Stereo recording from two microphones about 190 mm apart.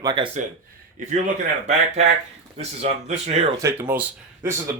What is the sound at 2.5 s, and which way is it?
Speech, 35° right (ahead or behind).